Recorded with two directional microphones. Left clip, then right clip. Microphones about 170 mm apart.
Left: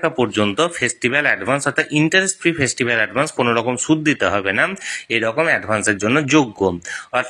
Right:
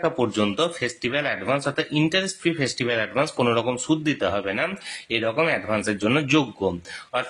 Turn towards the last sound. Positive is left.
turn(degrees=30)  # may be behind; listen again after turning